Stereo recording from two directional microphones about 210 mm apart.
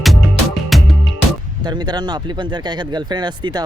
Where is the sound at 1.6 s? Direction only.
20° right (ahead or behind).